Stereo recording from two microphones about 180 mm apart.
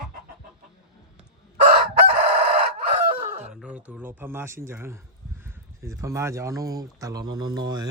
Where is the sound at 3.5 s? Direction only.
5° right (ahead or behind).